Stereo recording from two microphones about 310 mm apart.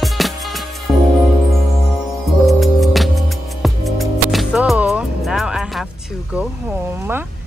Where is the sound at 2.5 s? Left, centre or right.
Centre.